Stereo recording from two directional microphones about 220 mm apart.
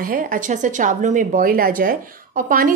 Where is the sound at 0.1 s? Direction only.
40° right (ahead or behind).